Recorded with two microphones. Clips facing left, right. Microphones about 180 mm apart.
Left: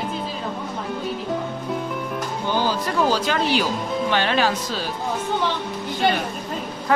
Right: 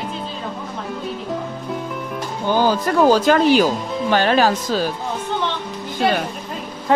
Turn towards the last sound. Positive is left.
turn(degrees=-25)  # may be behind; listen again after turning